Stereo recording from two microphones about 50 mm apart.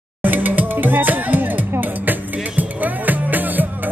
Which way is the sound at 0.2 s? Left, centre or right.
Right.